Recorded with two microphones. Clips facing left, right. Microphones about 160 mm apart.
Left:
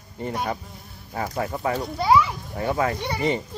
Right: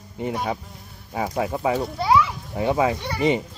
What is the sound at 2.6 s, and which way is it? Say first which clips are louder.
Speech: right 3 dB; 15° right (ahead or behind).